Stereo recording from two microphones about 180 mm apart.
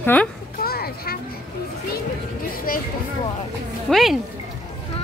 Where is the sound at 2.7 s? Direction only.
55° left (ahead or behind).